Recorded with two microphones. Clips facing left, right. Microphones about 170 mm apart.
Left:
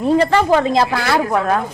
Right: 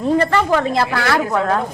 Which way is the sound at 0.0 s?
20° left (ahead or behind).